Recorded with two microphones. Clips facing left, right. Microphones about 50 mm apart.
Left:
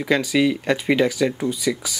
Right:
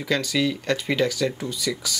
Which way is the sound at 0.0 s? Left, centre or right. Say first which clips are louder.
Left 5 dB; centre.